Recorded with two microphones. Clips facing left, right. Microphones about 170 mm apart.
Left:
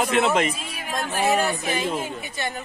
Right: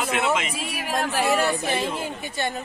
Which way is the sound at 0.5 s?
80° right.